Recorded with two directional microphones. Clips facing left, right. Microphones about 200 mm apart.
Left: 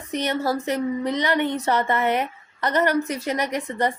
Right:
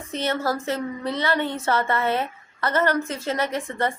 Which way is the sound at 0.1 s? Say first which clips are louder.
Left 1 dB; 15° left (ahead or behind).